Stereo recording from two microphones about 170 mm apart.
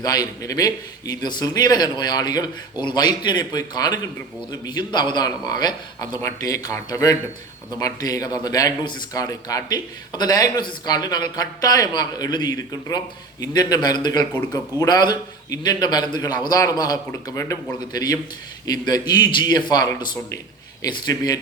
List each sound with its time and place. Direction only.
0.0 s a man's voice: 20° left (ahead or behind)